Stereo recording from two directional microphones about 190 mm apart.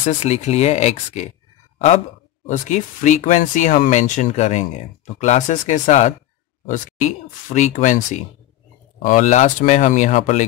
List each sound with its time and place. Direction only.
0.0 s speech: 35° left (ahead or behind)
2.4 s speech: 40° left (ahead or behind)